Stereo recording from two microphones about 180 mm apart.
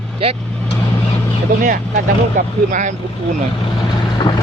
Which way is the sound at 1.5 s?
50° right (ahead or behind).